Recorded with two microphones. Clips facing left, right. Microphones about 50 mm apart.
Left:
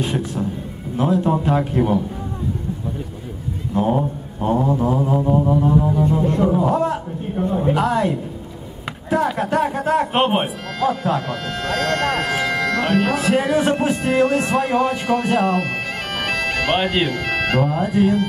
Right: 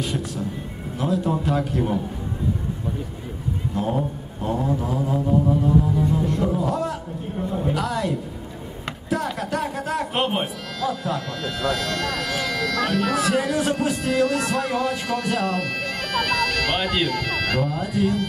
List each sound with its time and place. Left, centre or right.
0.9 s speech: left
3.7 s speech: left
9.4 s speech: left